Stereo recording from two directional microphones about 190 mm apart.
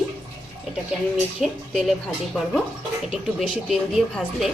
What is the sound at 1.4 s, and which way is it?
Speech, centre (ahead or behind).